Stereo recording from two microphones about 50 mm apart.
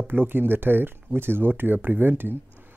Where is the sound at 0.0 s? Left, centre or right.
Right.